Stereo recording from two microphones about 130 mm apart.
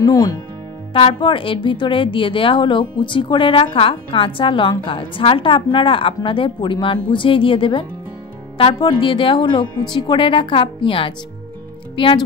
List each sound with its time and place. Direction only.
0.0 s speech: 30° left (ahead or behind)
0.9 s speech: 40° left (ahead or behind)